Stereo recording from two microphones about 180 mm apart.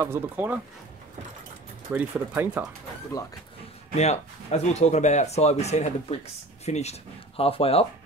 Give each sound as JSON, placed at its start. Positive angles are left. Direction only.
{"t": 0.0, "sound": "speech", "side_deg": -10}
{"t": 2.0, "sound": "speech", "side_deg": -10}
{"t": 3.9, "sound": "speech", "side_deg": 40}